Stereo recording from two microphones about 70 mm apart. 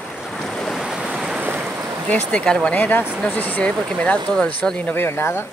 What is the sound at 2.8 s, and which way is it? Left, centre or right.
Speech, left.